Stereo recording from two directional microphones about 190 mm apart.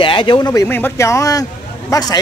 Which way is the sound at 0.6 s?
10° left (ahead or behind).